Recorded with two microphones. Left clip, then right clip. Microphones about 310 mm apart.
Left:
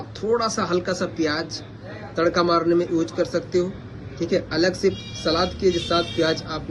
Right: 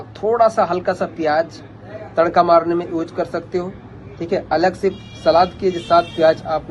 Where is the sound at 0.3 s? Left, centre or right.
Centre.